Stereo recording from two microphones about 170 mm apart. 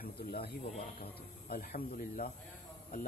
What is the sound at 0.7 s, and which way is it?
Speech, 35° left (ahead or behind).